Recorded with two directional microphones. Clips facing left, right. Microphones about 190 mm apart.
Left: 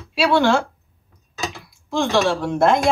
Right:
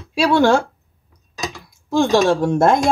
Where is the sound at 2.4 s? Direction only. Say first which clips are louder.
Right 2 dB; 45° right (ahead or behind).